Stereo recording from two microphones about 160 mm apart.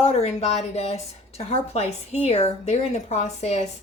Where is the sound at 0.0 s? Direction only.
40° left (ahead or behind).